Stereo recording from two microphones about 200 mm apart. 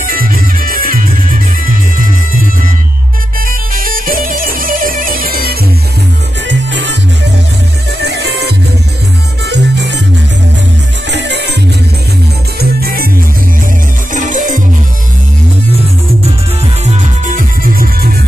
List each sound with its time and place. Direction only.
0.0 s music: 45° right (ahead or behind)
6.4 s music: 65° right (ahead or behind)
8.0 s music: 55° right (ahead or behind)
11.1 s music: 60° right (ahead or behind)
12.5 s music: 50° right (ahead or behind)
14.1 s music: 40° right (ahead or behind)
16.8 s music: 40° right (ahead or behind)